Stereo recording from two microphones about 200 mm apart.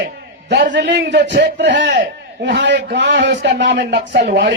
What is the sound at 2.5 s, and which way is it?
A man's voice, 60° right (ahead or behind).